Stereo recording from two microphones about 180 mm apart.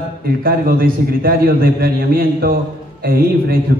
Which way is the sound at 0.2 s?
55° right (ahead or behind).